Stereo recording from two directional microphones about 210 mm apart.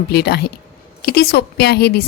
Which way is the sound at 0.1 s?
50° left (ahead or behind).